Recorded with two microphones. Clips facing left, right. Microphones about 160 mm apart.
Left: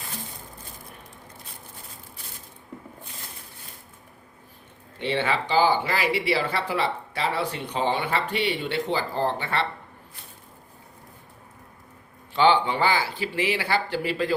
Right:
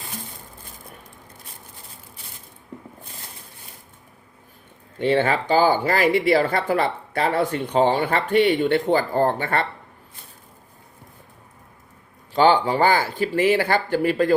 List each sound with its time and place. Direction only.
4.9 s speech: 45° right (ahead or behind)
12.3 s speech: 40° right (ahead or behind)